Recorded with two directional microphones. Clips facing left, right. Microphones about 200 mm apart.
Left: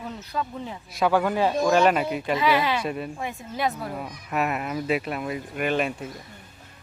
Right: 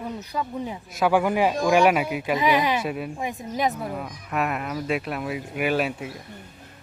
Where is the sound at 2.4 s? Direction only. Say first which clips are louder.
Right 1 dB; 20° right (ahead or behind).